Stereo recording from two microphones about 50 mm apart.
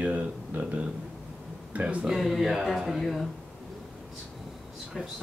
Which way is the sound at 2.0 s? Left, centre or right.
Centre.